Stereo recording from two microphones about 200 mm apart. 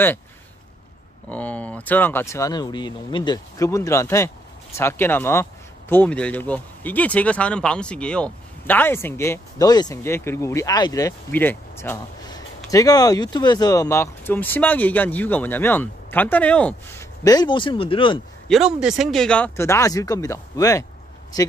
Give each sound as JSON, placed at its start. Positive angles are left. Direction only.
{"t": 1.3, "sound": "speech", "side_deg": 5}
{"t": 18.5, "sound": "speech", "side_deg": -5}